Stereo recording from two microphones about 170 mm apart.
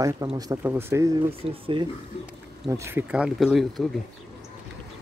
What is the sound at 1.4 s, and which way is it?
Speech, 35° right (ahead or behind).